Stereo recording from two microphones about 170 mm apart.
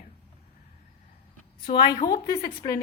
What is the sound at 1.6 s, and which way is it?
A woman's voice, 25° left (ahead or behind).